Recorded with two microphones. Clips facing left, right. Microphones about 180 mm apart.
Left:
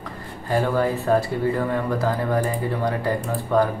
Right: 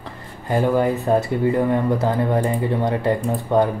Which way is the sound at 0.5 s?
20° right (ahead or behind).